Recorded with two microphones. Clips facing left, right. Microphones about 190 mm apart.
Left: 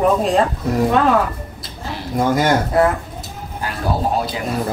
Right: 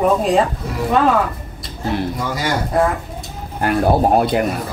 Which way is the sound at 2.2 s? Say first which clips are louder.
Left 6 dB; 50° left (ahead or behind).